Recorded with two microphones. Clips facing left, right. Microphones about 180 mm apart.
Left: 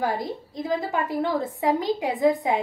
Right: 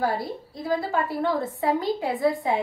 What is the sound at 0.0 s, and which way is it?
A woman's voice, 20° left (ahead or behind).